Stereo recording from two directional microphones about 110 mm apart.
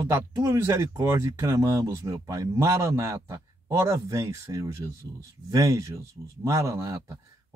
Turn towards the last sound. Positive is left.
turn(degrees=-25)  # may be behind; listen again after turning